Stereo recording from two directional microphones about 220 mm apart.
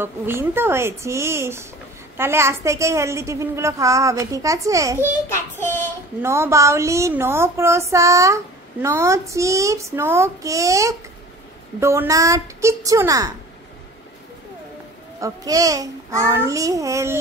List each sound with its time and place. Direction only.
0.0 s a woman's voice: 10° right (ahead or behind)
5.6 s child singing: 10° left (ahead or behind)
6.2 s a woman's voice: 10° right (ahead or behind)
15.1 s a woman's voice: 15° right (ahead or behind)